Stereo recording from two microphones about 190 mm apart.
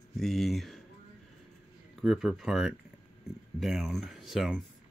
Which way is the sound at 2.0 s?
Centre (ahead or behind).